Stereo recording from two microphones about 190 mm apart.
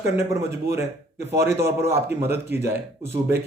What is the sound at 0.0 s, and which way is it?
Speech, 15° right (ahead or behind).